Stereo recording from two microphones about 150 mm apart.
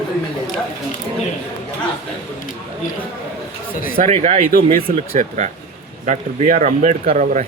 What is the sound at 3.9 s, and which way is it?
Speech, 50° right (ahead or behind).